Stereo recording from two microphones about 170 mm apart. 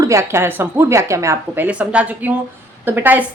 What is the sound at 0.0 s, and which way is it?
A woman's voice, 15° right (ahead or behind).